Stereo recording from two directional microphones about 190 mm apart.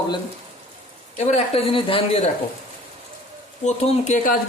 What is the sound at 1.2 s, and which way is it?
Speech, 35° left (ahead or behind).